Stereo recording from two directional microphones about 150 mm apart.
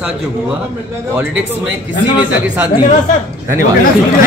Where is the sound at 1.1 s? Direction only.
10° right (ahead or behind).